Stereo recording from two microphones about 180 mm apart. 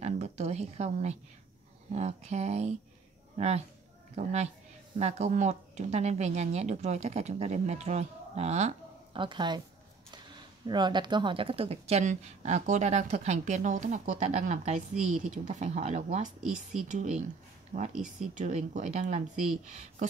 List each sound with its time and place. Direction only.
0.0 s a woman's voice: 35° right (ahead or behind)
10.7 s a woman's voice: 25° right (ahead or behind); by 19.2 s 40° right (ahead or behind)